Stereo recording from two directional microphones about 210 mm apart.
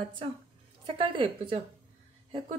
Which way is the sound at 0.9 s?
25° right (ahead or behind).